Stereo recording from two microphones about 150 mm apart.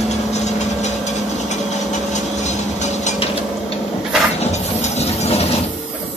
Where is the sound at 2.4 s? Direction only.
50° left (ahead or behind).